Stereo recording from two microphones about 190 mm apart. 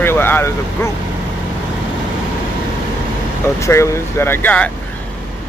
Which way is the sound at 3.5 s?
15° left (ahead or behind).